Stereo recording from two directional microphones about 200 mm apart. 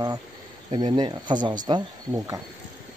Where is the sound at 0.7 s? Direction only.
25° right (ahead or behind).